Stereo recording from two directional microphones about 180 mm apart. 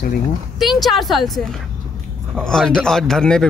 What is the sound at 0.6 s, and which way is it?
Speech, centre (ahead or behind).